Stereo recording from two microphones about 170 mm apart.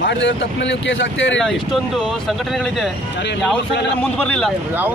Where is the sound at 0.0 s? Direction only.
90° left.